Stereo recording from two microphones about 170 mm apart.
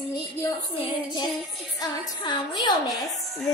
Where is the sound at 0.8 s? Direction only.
25° left (ahead or behind).